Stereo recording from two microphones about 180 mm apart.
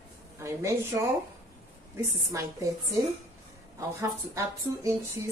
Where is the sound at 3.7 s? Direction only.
15° right (ahead or behind).